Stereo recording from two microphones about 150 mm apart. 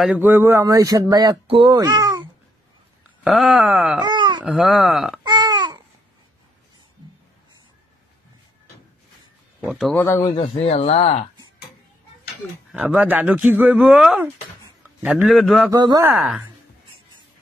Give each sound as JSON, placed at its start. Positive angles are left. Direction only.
{"t": 0.0, "sound": "speech", "side_deg": -10}
{"t": 3.3, "sound": "speech", "side_deg": -5}
{"t": 4.0, "sound": "wail", "side_deg": -30}
{"t": 4.5, "sound": "speech", "side_deg": 0}
{"t": 5.2, "sound": "baby cry", "side_deg": -30}
{"t": 9.6, "sound": "speech", "side_deg": -5}
{"t": 9.9, "sound": "speech", "side_deg": 20}
{"t": 10.4, "sound": "speech", "side_deg": 45}
{"t": 12.7, "sound": "a man's voice", "side_deg": -10}
{"t": 15.2, "sound": "speech", "side_deg": 0}
{"t": 15.7, "sound": "speech", "side_deg": -25}
{"t": 16.1, "sound": "speech", "side_deg": -5}